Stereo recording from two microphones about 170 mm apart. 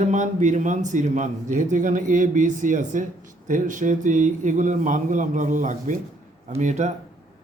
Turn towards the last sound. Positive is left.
turn(degrees=-45)  # may be behind; listen again after turning